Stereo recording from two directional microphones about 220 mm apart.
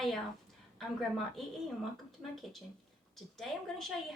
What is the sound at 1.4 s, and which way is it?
A woman's voice, centre (ahead or behind).